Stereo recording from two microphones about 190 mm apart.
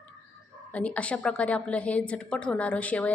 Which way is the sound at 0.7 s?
5° left (ahead or behind).